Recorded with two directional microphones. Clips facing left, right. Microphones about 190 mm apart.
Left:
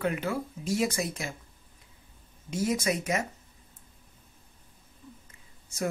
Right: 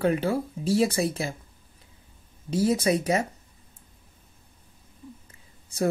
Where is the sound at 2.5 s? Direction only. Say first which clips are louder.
Right 6 dB; 30° right (ahead or behind).